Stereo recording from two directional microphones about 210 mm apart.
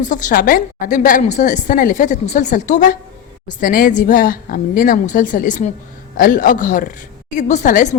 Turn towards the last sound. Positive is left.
turn(degrees=35)  # may be behind; listen again after turning